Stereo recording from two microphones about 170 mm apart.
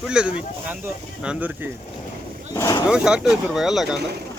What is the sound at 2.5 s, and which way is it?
Speech, 20° left (ahead or behind).